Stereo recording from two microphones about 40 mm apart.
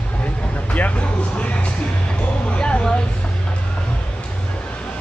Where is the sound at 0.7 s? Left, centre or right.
Left.